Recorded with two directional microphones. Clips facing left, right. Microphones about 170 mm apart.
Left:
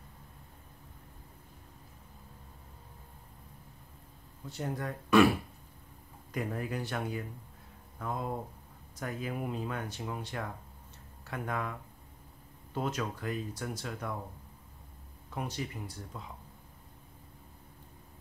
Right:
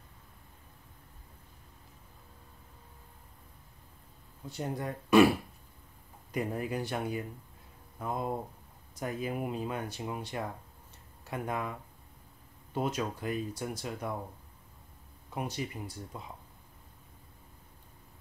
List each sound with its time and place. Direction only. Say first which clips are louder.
4.6 s speech: right 1 dB; 20° right (ahead or behind)
6.3 s speech: right 2 dB; 20° right (ahead or behind)
12.7 s speech: right 2 dB; 15° right (ahead or behind)
15.3 s speech: right 1 dB; 15° right (ahead or behind)